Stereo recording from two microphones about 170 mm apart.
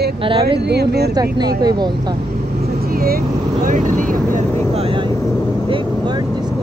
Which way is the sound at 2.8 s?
60° right (ahead or behind).